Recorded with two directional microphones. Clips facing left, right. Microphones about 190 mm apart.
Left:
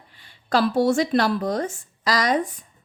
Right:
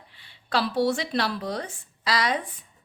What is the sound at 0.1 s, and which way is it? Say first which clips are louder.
Speech: left 5 dB; 45° left (ahead or behind).